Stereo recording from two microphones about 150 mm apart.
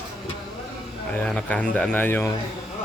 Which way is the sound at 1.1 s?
5° left (ahead or behind).